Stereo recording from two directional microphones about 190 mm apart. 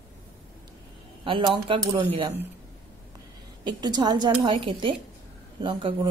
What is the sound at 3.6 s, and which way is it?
A woman's voice, 20° right (ahead or behind).